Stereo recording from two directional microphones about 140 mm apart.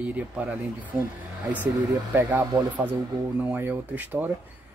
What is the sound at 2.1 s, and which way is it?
Speech, 15° right (ahead or behind).